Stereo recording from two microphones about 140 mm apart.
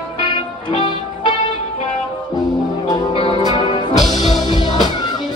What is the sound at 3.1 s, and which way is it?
Music, 40° left (ahead or behind).